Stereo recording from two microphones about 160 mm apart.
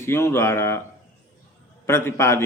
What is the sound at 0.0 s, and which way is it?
Speech, 15° left (ahead or behind).